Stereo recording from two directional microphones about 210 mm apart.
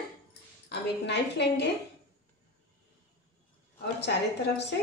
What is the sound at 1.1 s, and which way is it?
Speech, 55° left (ahead or behind).